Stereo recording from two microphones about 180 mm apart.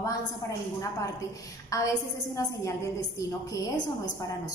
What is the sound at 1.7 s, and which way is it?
A woman's voice, 20° left (ahead or behind).